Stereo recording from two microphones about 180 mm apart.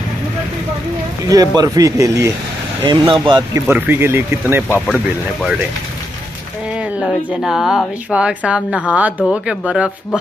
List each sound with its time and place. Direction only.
1.2 s speech: 20° right (ahead or behind)
2.8 s speech: 25° right (ahead or behind)
3.6 s speech: 10° right (ahead or behind)
4.6 s speech: 5° left (ahead or behind)
7.0 s speech: centre (ahead or behind)